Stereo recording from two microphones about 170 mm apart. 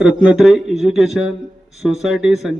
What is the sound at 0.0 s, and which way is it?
A man's voice, 5° right (ahead or behind).